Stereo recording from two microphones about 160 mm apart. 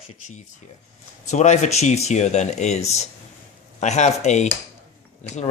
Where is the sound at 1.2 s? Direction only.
45° left (ahead or behind).